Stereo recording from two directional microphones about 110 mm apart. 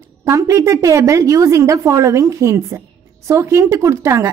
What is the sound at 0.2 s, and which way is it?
Speech, 25° right (ahead or behind).